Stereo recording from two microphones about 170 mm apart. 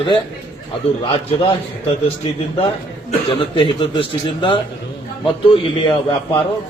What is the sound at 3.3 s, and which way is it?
A man's voice, 30° left (ahead or behind).